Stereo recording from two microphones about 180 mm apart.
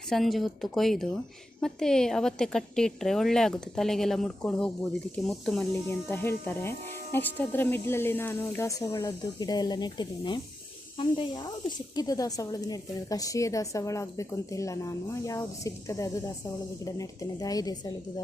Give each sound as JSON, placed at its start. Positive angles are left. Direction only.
{"t": 0.1, "sound": "a woman's voice", "side_deg": 0}
{"t": 5.9, "sound": "a woman's voice", "side_deg": 15}